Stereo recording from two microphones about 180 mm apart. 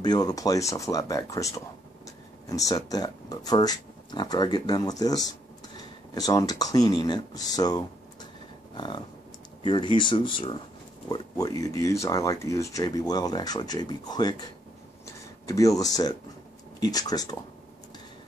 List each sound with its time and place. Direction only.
0.0 s speech: 20° left (ahead or behind)
8.7 s a sound: 25° left (ahead or behind)
9.7 s speech: 25° left (ahead or behind)